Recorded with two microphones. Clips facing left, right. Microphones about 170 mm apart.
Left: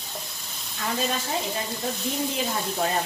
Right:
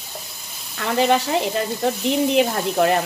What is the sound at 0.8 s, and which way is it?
Sizzle, 70° right (ahead or behind).